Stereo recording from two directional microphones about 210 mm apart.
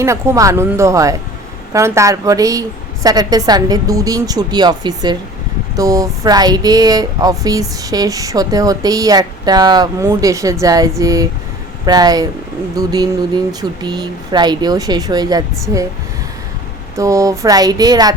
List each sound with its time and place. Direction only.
0.0 s speech: 15° right (ahead or behind)
17.0 s speech: 15° right (ahead or behind)